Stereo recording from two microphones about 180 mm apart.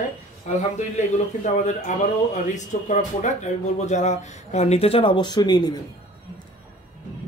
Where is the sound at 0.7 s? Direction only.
40° left (ahead or behind); by 5.8 s 20° left (ahead or behind).